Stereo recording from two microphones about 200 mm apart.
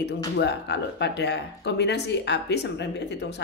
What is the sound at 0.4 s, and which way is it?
Speech, 60° left (ahead or behind).